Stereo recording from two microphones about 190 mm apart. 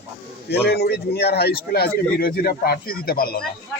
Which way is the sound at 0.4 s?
60° left (ahead or behind).